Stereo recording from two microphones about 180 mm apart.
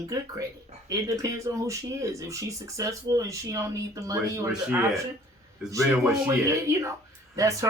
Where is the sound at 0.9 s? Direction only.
20° right (ahead or behind).